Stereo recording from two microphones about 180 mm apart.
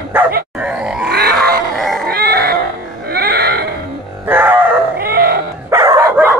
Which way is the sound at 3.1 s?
60° right (ahead or behind).